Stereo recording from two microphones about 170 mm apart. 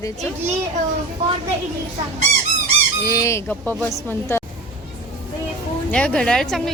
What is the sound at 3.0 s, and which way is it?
Speech, 20° left (ahead or behind).